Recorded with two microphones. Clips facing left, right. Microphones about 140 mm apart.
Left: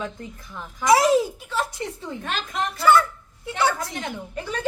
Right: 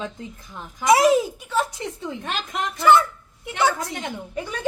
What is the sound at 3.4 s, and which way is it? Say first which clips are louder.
A woman's voice: right 1 dB; 20° right (ahead or behind).